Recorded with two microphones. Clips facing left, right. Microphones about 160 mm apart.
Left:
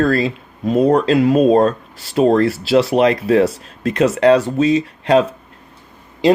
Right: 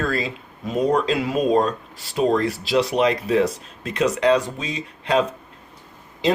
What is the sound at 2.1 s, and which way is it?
Speech, 60° left (ahead or behind).